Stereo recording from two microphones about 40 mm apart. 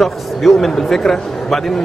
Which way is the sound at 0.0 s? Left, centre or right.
Centre.